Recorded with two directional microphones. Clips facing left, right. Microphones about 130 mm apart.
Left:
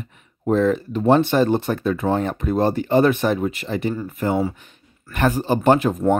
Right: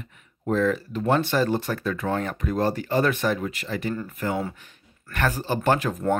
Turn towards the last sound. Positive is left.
turn(degrees=20)  # may be behind; listen again after turning